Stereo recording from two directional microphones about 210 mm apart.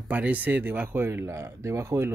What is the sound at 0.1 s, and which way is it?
Speech, 5° right (ahead or behind).